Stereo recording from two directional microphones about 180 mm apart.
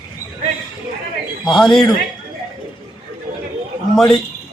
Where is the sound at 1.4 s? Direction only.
Centre (ahead or behind).